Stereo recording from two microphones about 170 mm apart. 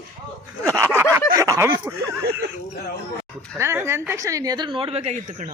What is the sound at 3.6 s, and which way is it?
A woman's voice, 15° right (ahead or behind).